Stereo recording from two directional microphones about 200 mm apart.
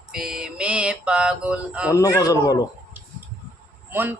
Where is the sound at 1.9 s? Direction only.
15° left (ahead or behind).